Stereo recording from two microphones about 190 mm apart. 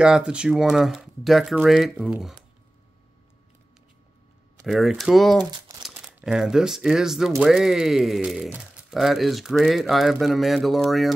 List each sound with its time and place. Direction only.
0.0 s speech: 5° right (ahead or behind)
4.6 s speech: centre (ahead or behind)
5.4 s crumpling: 20° right (ahead or behind)
5.8 s speech: centre (ahead or behind)